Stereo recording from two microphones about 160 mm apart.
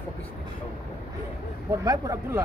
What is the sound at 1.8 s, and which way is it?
Speech, 20° right (ahead or behind).